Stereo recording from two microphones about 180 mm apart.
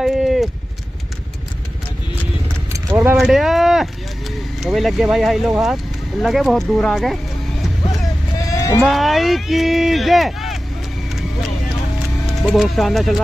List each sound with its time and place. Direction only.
0.0 s a sound: centre (ahead or behind)
2.9 s speech: 10° right (ahead or behind)
8.5 s vehicle: 20° left (ahead or behind)
8.8 s speech: centre (ahead or behind)
12.3 s speech: centre (ahead or behind)